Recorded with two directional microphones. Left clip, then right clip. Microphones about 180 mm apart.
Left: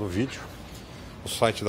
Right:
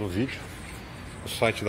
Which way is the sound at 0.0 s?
20° left (ahead or behind).